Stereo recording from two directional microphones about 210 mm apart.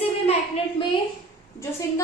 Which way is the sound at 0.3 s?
25° left (ahead or behind).